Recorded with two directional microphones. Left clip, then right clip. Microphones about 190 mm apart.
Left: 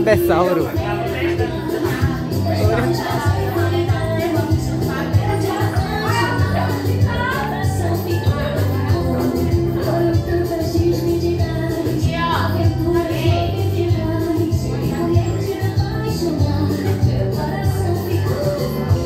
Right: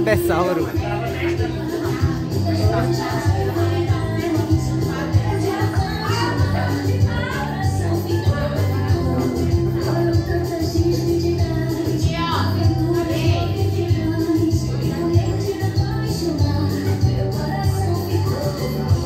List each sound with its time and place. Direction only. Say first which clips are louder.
0.0 s speech: left 3 dB; 10° left (ahead or behind)